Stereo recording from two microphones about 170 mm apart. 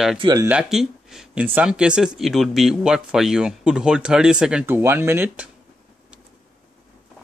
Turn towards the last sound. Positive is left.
turn(degrees=-15)  # may be behind; listen again after turning